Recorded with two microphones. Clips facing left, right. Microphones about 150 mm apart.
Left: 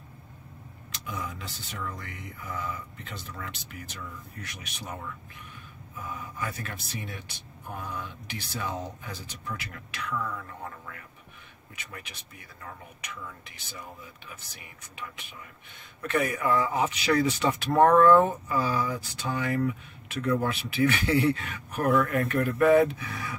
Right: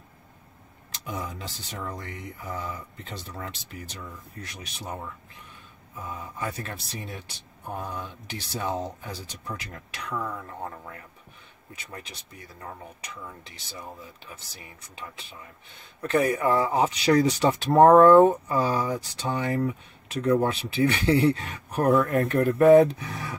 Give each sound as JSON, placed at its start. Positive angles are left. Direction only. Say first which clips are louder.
{"t": 1.0, "sound": "speech", "louder": "right 2 dB", "side_deg": -40}